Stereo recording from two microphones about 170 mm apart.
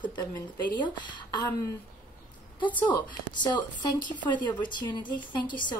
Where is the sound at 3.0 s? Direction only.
25° left (ahead or behind).